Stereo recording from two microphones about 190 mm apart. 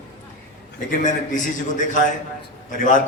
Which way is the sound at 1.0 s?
40° left (ahead or behind).